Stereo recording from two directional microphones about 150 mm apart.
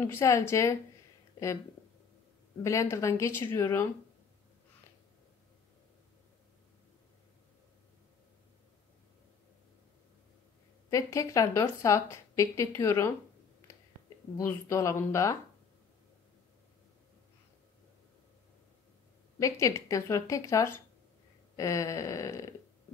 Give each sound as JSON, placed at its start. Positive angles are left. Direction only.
{"t": 0.0, "sound": "a woman's voice", "side_deg": 15}
{"t": 2.6, "sound": "a woman's voice", "side_deg": 20}
{"t": 10.9, "sound": "a woman's voice", "side_deg": 20}
{"t": 14.3, "sound": "a woman's voice", "side_deg": 20}
{"t": 19.4, "sound": "a woman's voice", "side_deg": 20}